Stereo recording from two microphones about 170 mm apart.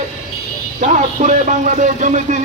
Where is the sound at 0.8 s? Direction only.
45° right (ahead or behind).